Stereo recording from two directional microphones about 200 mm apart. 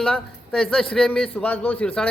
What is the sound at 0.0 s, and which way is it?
Speech, 5° left (ahead or behind).